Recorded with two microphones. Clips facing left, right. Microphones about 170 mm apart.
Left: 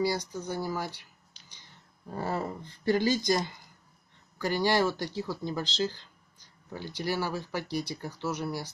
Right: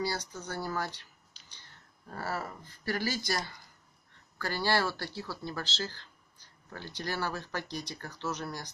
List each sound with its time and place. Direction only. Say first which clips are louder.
0.0 s speech: left 5 dB; 15° left (ahead or behind)